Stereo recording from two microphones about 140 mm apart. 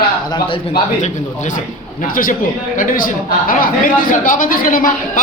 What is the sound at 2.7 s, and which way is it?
A man's voice, 80° left.